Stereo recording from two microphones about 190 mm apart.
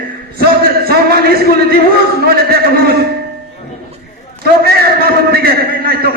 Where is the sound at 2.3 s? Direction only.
55° right (ahead or behind).